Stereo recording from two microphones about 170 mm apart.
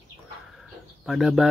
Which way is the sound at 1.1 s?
Centre (ahead or behind).